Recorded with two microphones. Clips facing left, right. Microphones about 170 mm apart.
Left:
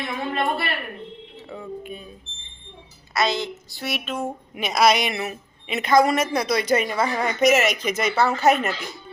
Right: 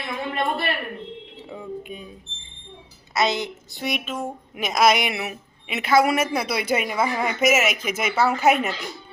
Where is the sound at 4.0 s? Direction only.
Centre (ahead or behind).